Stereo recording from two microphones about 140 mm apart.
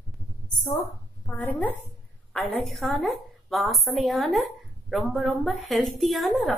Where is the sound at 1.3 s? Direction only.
10° left (ahead or behind).